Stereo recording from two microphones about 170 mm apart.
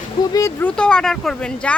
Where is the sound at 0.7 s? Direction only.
5° left (ahead or behind).